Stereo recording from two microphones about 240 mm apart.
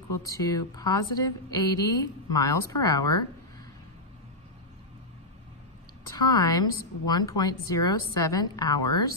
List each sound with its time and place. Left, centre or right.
0.4 s a woman's voice: centre
6.1 s a woman's voice: centre